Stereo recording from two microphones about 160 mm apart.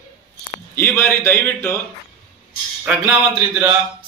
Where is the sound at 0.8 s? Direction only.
15° left (ahead or behind).